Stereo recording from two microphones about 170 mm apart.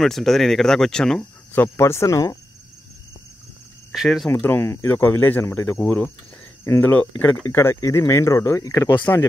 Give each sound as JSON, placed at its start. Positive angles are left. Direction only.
{"t": 0.0, "sound": "speech", "side_deg": 0}
{"t": 3.9, "sound": "speech", "side_deg": 0}
{"t": 4.3, "sound": "speech", "side_deg": 10}